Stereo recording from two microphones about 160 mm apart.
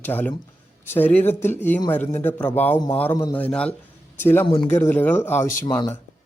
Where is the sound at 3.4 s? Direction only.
10° left (ahead or behind); by 5.9 s 25° left (ahead or behind).